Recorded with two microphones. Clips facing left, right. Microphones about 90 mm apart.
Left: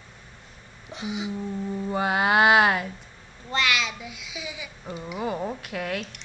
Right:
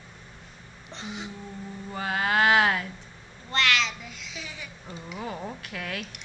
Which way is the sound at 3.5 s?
10° left (ahead or behind).